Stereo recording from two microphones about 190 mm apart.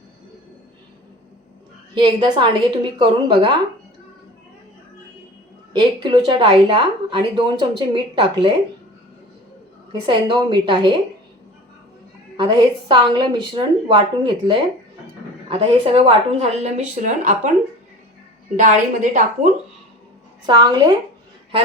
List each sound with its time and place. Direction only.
2.0 s a woman's voice: 25° right (ahead or behind)
5.7 s a woman's voice: 25° right (ahead or behind)
9.9 s a woman's voice: 25° right (ahead or behind)
12.4 s a woman's voice: 25° right (ahead or behind); by 17.5 s 40° right (ahead or behind)
18.5 s speech: 40° right (ahead or behind)
20.5 s a woman's voice: 25° right (ahead or behind)